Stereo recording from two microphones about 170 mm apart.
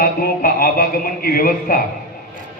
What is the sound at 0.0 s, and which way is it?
Speech, 60° left (ahead or behind).